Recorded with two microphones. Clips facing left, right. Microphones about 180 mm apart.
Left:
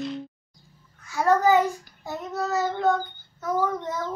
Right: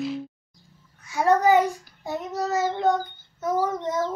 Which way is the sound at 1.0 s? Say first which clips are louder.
Right 1 dB; 20° right (ahead or behind).